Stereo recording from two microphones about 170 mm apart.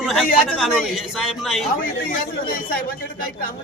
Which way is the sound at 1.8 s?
55° left (ahead or behind).